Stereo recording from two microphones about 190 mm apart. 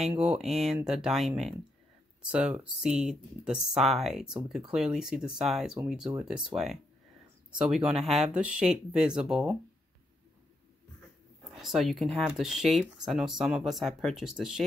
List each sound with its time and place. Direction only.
0.1 s speech: 5° right (ahead or behind)
11.5 s speech: centre (ahead or behind)